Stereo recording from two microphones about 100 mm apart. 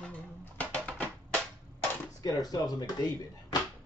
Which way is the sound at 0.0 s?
10° left (ahead or behind).